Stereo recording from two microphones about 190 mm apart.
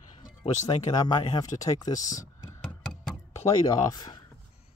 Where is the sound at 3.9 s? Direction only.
20° left (ahead or behind).